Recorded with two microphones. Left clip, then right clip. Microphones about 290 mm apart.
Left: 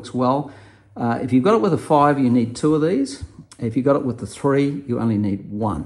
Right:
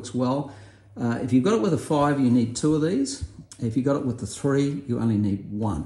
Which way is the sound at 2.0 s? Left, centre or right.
Centre.